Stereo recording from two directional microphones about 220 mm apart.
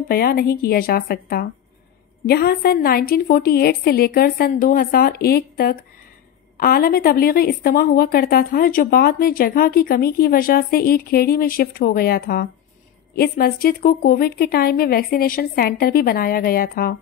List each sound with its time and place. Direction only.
0.1 s a woman's voice: 45° left (ahead or behind)